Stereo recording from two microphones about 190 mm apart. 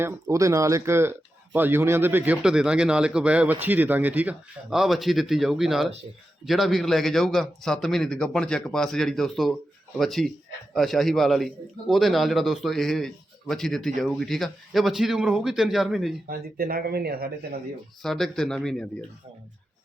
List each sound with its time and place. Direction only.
0.0 s a man's voice: 15° right (ahead or behind)
16.2 s speech: 50° right (ahead or behind)
18.0 s a man's voice: centre (ahead or behind)